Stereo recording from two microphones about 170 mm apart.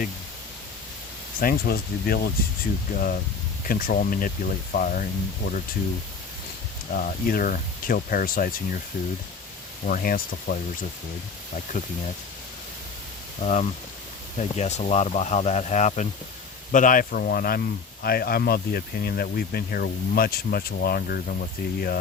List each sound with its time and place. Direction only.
1.4 s speech: 60° left (ahead or behind)
2.9 s speech: 50° left (ahead or behind)
6.9 s speech: 55° left (ahead or behind)
9.8 s speech: 55° left (ahead or behind)
13.4 s speech: 40° left (ahead or behind); by 21.9 s 65° left (ahead or behind)